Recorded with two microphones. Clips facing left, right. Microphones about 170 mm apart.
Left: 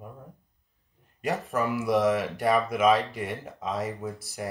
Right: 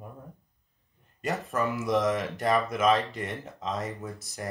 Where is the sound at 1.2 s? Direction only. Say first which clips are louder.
Left 2 dB; 15° left (ahead or behind).